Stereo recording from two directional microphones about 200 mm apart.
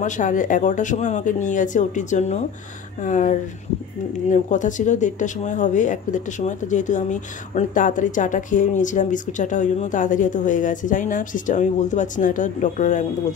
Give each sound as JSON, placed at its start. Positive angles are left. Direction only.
{"t": 0.0, "sound": "speech", "side_deg": 40}